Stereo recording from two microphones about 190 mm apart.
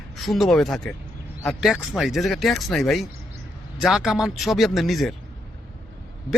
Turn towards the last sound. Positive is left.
turn(degrees=0)  # may be behind; listen again after turning